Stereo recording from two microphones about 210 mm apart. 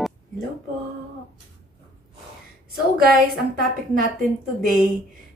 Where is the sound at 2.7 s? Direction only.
45° right (ahead or behind).